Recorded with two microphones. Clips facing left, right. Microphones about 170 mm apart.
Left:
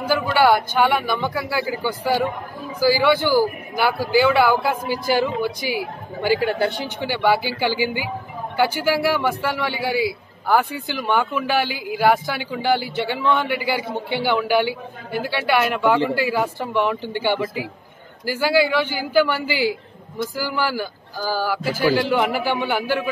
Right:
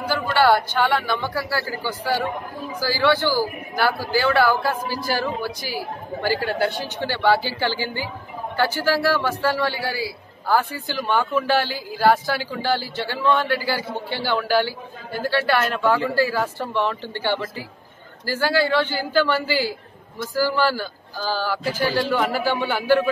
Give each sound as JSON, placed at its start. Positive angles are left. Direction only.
{"t": 0.1, "sound": "a man's voice", "side_deg": 10}